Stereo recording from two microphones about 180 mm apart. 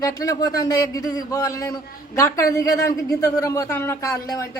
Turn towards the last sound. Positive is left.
turn(degrees=15)  # may be behind; listen again after turning